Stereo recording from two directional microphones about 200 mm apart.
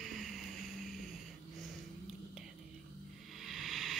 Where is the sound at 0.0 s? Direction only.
Centre (ahead or behind).